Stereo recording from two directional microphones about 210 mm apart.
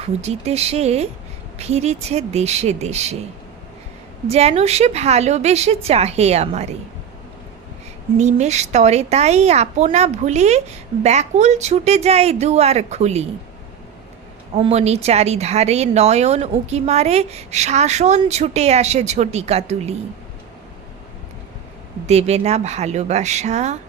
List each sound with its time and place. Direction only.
0.0 s speech: 30° right (ahead or behind)
4.3 s speech: 30° right (ahead or behind)
8.2 s speech: 35° right (ahead or behind)
14.5 s speech: 30° right (ahead or behind)
22.0 s speech: 30° right (ahead or behind)